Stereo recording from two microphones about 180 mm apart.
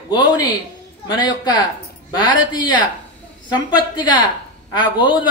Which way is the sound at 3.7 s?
25° left (ahead or behind).